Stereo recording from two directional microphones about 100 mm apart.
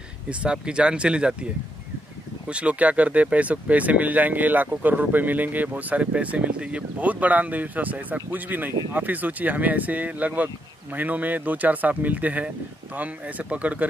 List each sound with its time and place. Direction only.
0.3 s speech: 10° right (ahead or behind)